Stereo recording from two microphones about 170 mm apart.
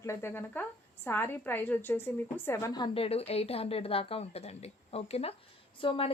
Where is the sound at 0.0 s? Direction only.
15° left (ahead or behind).